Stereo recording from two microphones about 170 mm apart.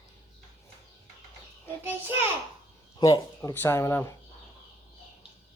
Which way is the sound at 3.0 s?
20° left (ahead or behind).